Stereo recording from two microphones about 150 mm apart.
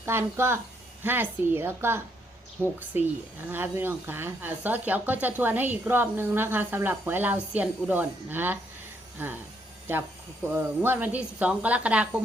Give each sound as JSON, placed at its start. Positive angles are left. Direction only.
{"t": 0.0, "sound": "speech", "side_deg": -15}
{"t": 10.4, "sound": "speech", "side_deg": -15}